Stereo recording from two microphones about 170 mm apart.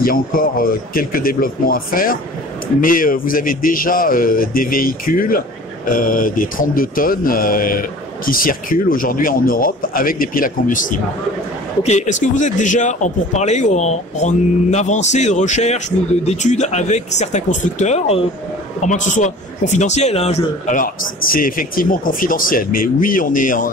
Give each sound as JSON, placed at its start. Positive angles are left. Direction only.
{"t": 0.0, "sound": "a man's voice", "side_deg": 60}